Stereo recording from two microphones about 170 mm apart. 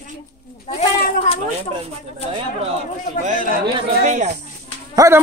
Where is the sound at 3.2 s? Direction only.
50° right (ahead or behind).